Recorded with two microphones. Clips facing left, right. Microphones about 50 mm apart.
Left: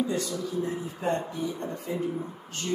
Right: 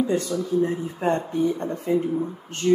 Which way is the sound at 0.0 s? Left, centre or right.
Right.